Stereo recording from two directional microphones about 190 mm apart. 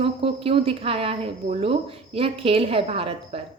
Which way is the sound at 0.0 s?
30° right (ahead or behind).